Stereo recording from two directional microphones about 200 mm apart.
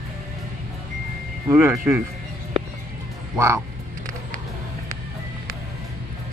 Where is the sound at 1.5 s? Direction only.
15° right (ahead or behind).